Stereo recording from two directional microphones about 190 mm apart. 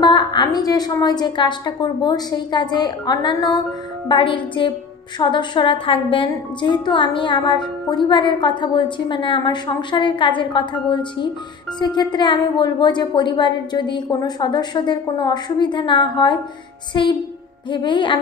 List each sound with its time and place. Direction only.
0.0 s a woman's voice: 25° left (ahead or behind)